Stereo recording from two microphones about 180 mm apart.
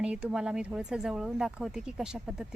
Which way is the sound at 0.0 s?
5° right (ahead or behind).